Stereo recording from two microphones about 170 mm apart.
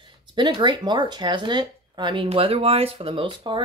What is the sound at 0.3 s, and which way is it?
Speech, 30° right (ahead or behind).